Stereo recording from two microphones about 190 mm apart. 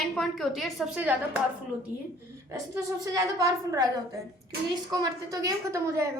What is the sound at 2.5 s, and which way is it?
A woman's voice, 15° right (ahead or behind).